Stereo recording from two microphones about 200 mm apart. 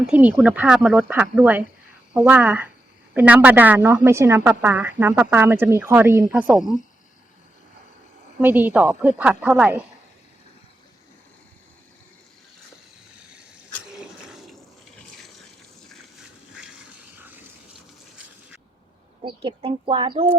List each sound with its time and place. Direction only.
0.0 s a woman's voice: 5° right (ahead or behind)
8.4 s a woman's voice: 10° right (ahead or behind)
13.9 s fill: centre (ahead or behind)
16.6 s water: 5° right (ahead or behind)
19.2 s speech: 25° right (ahead or behind)